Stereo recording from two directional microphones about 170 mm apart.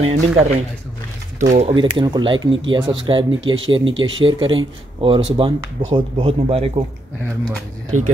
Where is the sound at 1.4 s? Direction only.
40° right (ahead or behind).